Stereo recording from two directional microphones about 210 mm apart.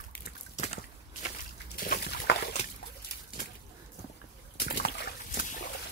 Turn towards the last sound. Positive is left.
turn(degrees=35)  # may be behind; listen again after turning